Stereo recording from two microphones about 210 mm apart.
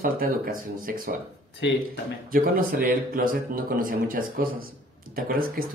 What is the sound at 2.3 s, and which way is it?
Speech, 40° right (ahead or behind).